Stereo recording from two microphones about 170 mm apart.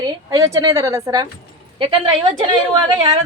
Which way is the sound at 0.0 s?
25° right (ahead or behind).